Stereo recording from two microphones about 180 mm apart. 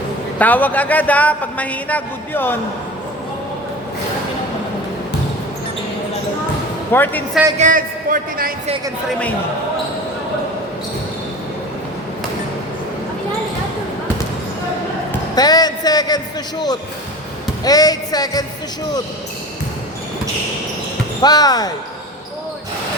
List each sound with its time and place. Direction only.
0.3 s a man's voice: 10° left (ahead or behind)
6.9 s a man's voice: 10° left (ahead or behind)
7.6 s a man's voice: 50° right (ahead or behind)
15.4 s a man's voice: 20° left (ahead or behind)
21.2 s a man's voice: 20° left (ahead or behind)